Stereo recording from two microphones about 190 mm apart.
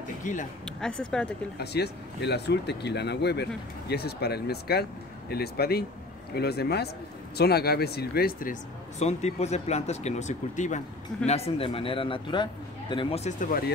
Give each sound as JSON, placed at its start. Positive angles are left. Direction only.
{"t": 0.2, "sound": "speech", "side_deg": 40}
{"t": 0.7, "sound": "speech", "side_deg": 5}
{"t": 1.6, "sound": "speech", "side_deg": 60}
{"t": 9.0, "sound": "speech", "side_deg": 35}